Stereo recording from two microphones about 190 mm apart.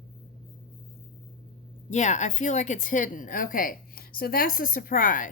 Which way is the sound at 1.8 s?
40° left (ahead or behind).